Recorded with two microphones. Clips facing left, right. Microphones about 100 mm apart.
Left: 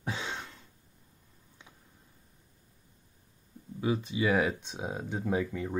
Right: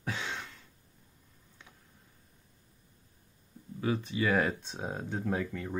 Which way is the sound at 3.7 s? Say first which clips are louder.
Left 1 dB; 15° left (ahead or behind).